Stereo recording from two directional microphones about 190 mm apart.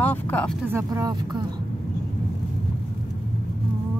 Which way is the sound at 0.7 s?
15° right (ahead or behind).